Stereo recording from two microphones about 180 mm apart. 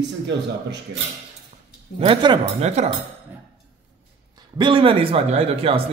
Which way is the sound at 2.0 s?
30° right (ahead or behind).